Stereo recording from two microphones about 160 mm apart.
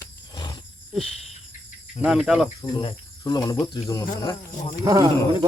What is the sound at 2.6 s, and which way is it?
Cricket, 25° left (ahead or behind).